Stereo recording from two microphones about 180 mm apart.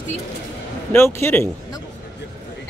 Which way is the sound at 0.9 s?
15° left (ahead or behind).